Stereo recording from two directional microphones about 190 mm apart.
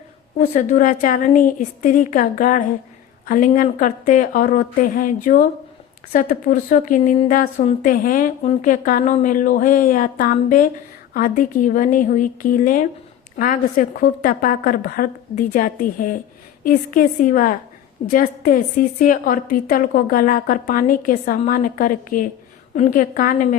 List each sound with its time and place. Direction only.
0.3 s a woman's voice: 40° left (ahead or behind)